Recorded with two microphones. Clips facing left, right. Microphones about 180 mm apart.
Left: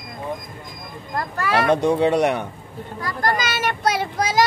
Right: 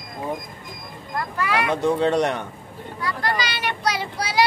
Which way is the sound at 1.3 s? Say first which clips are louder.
Left 3 dB; 45° left (ahead or behind).